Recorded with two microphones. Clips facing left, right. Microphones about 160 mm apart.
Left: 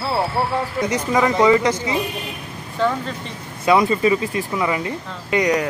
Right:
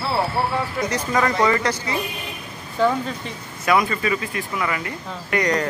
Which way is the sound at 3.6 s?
25° left (ahead or behind).